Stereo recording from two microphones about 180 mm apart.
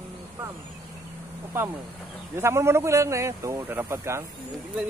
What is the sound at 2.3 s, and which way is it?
A man's voice, 15° right (ahead or behind).